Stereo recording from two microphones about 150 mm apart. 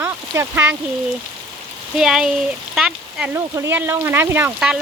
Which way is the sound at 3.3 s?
20° right (ahead or behind).